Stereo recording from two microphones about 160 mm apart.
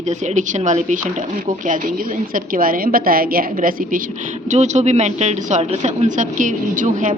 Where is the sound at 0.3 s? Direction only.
50° right (ahead or behind).